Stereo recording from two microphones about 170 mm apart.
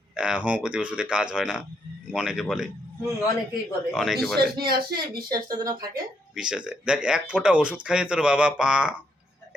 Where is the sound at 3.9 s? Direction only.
Centre (ahead or behind).